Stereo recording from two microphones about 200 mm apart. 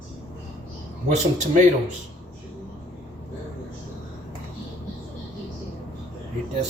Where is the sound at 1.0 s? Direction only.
35° right (ahead or behind).